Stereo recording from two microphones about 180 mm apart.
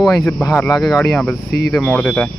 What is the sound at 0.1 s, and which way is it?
Speech, 15° left (ahead or behind).